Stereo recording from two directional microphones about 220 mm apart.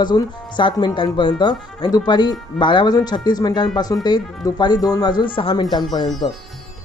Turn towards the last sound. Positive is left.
turn(degrees=20)  # may be behind; listen again after turning